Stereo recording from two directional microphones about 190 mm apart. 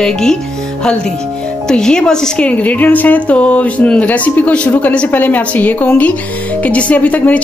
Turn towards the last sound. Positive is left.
turn(degrees=10)  # may be behind; listen again after turning